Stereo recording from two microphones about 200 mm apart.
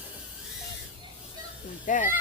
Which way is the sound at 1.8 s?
40° left (ahead or behind).